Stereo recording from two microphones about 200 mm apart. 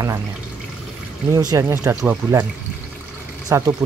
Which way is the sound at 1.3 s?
20° right (ahead or behind).